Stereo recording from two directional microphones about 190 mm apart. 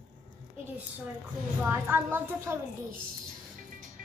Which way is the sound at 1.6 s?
10° right (ahead or behind).